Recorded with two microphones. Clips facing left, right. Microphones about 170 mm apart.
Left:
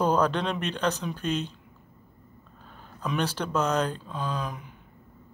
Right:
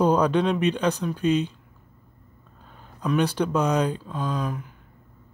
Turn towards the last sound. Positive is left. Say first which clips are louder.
# right 4 dB
turn(degrees=0)  # may be behind; listen again after turning